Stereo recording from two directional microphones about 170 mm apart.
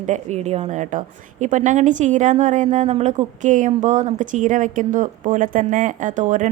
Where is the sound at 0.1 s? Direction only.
40° right (ahead or behind).